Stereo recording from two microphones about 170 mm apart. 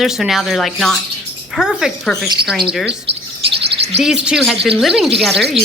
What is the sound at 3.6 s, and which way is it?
Chirp, 35° right (ahead or behind).